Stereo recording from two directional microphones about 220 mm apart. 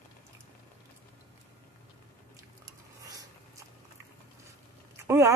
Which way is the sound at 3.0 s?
15° right (ahead or behind).